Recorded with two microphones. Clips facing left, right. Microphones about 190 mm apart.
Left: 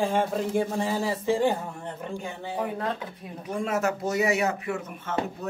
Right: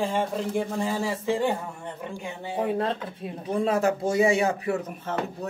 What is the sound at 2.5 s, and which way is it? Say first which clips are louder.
Speech: right 4 dB; 25° right (ahead or behind).